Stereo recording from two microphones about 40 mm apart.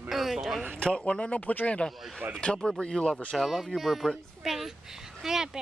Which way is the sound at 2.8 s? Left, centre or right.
Centre.